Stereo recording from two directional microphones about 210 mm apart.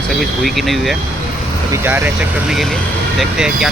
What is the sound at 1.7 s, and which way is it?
Speech, 10° right (ahead or behind).